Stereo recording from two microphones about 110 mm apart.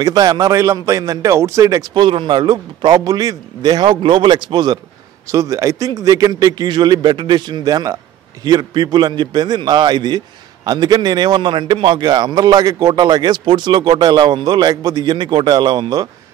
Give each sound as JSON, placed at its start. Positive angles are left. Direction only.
{"t": 0.0, "sound": "a man's voice", "side_deg": -35}
{"t": 5.3, "sound": "a man's voice", "side_deg": -30}